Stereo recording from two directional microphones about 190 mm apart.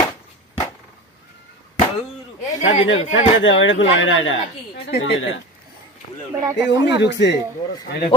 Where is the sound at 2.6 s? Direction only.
40° left (ahead or behind).